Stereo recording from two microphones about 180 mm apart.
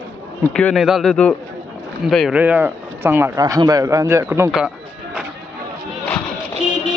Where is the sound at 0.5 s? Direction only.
Centre (ahead or behind); by 4.4 s 15° right (ahead or behind).